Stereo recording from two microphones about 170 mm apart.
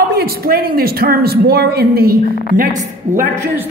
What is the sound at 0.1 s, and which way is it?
Speech, 60° right (ahead or behind).